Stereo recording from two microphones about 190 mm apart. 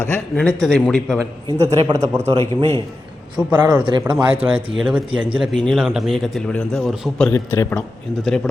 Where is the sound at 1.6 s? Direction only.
30° right (ahead or behind).